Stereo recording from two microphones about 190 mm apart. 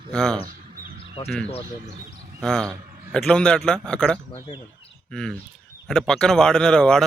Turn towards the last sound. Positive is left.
turn(degrees=5)  # may be behind; listen again after turning